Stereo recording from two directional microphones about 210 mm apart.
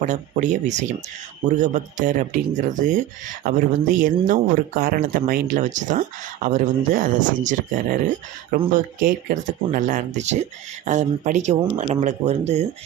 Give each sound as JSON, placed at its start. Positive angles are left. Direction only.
{"t": 0.0, "sound": "speech", "side_deg": -35}